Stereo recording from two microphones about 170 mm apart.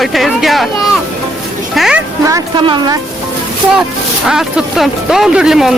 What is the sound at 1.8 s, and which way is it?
Speech, 5° right (ahead or behind).